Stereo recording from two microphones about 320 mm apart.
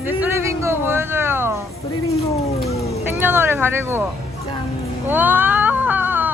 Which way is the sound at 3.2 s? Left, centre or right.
Centre.